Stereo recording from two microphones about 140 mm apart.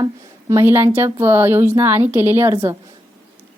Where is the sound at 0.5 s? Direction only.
15° right (ahead or behind).